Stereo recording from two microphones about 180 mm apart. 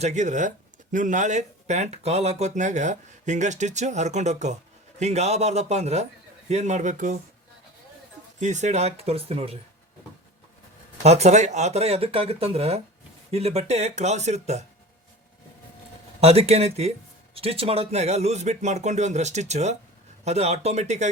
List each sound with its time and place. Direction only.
0.0 s speech: 40° right (ahead or behind)
8.4 s speech: 40° right (ahead or behind)
11.0 s speech: 35° right (ahead or behind)
16.2 s speech: 35° right (ahead or behind)